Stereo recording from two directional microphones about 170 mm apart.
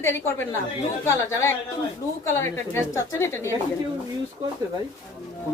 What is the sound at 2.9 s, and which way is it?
Speech, 15° left (ahead or behind).